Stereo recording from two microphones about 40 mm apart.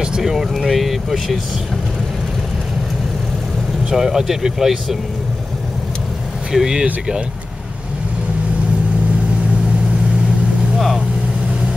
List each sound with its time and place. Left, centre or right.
0.2 s vehicle: centre
3.9 s speech: centre
6.5 s speech: centre